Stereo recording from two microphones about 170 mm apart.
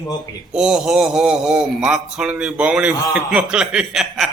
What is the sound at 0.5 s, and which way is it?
Speech, 5° right (ahead or behind).